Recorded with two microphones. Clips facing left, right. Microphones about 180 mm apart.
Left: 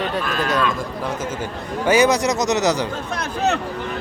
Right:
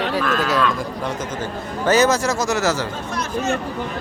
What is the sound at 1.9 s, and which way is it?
A man's voice, 15° left (ahead or behind).